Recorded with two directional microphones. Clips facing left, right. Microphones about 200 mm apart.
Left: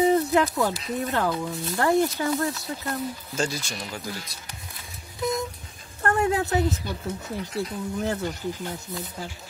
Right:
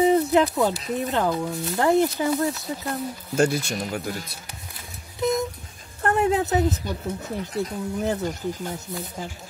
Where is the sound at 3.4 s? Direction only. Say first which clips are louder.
Right 7 dB; 60° right (ahead or behind).